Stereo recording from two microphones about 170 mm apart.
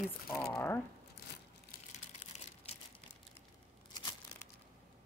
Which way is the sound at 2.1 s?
40° left (ahead or behind).